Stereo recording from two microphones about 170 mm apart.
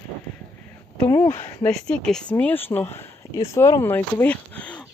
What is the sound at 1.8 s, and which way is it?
Speech, 5° left (ahead or behind).